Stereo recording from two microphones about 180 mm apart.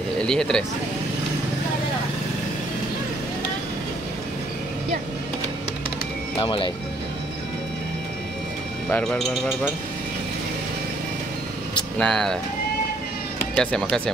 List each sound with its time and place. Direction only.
0.3 s speech: 5° left (ahead or behind)
6.4 s speech: 25° left (ahead or behind)
8.9 s a man's voice: 10° left (ahead or behind)
12.0 s speech: centre (ahead or behind)
13.6 s speech: 5° left (ahead or behind)